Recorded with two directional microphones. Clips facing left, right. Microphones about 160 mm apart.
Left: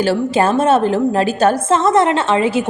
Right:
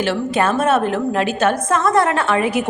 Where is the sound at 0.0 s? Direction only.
35° left (ahead or behind).